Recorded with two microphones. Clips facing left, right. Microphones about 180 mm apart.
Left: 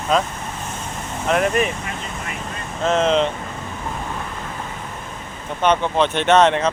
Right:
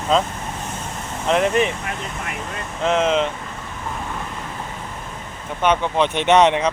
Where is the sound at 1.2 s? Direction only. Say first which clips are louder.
Right 1 dB; 25° right (ahead or behind).